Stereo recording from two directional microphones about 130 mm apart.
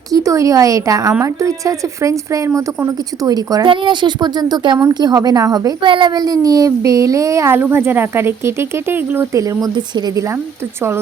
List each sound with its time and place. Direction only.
0.1 s a child's voice: 25° right (ahead or behind)